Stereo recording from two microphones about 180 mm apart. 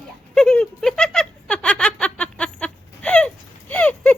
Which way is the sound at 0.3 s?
5° left (ahead or behind).